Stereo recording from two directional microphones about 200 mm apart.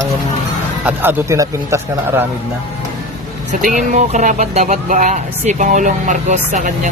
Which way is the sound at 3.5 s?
40° right (ahead or behind).